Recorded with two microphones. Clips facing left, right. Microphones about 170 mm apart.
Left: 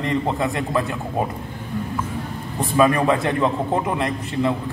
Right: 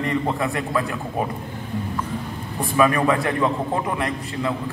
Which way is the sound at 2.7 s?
20° left (ahead or behind).